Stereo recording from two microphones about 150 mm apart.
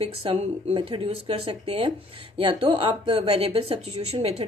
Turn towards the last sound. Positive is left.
turn(degrees=-45)  # may be behind; listen again after turning